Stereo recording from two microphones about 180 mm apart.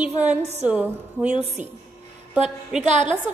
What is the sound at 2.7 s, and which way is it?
Speech, 5° right (ahead or behind).